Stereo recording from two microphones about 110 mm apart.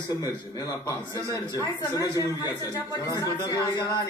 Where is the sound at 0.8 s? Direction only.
30° left (ahead or behind).